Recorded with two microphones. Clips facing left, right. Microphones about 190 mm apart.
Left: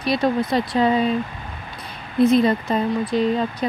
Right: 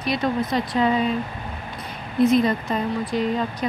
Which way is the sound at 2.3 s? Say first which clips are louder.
Left 2 dB; 30° left (ahead or behind).